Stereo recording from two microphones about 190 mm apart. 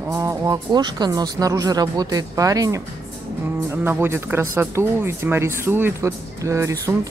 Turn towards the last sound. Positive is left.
turn(degrees=-15)  # may be behind; listen again after turning